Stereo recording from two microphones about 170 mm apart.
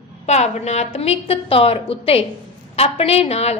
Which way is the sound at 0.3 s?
40° left (ahead or behind).